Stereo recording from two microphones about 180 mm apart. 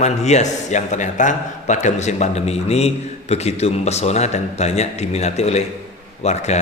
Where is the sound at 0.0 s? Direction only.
40° left (ahead or behind).